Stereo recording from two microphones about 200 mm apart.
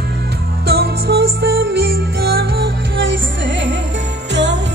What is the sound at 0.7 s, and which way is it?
Music, 50° right (ahead or behind).